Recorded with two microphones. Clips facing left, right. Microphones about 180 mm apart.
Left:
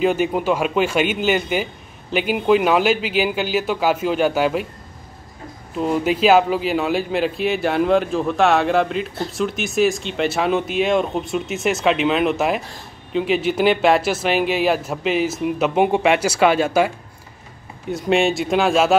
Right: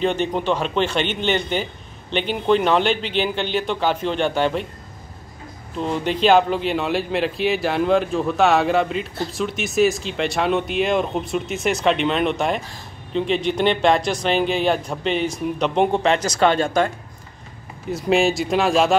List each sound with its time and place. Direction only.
0.0 s a man's voice: 5° left (ahead or behind)
5.8 s speech: 5° left (ahead or behind)